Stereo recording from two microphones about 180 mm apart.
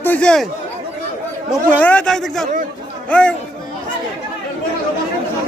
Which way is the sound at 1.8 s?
5° left (ahead or behind).